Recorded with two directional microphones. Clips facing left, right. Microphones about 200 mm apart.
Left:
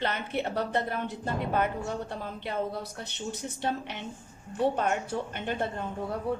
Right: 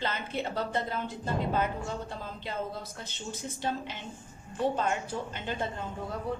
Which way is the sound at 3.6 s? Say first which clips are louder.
Left 1 dB; 65° left (ahead or behind).